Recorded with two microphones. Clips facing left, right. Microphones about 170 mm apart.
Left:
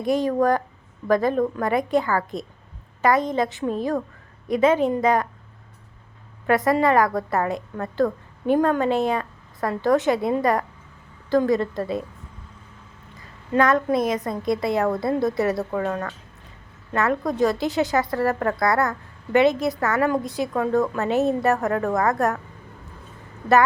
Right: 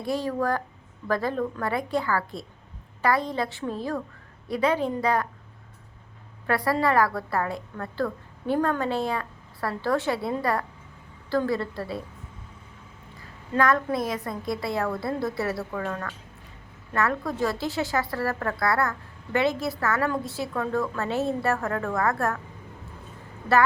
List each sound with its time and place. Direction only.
0.0 s a woman's voice: 20° left (ahead or behind)
6.5 s a woman's voice: 20° left (ahead or behind)
13.5 s a woman's voice: 20° left (ahead or behind)
15.9 s speech: 35° left (ahead or behind)
16.9 s a woman's voice: 20° left (ahead or behind)